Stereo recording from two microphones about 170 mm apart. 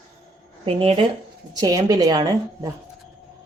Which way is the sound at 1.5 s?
20° right (ahead or behind).